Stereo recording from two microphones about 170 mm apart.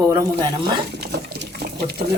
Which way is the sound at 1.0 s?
70° right (ahead or behind).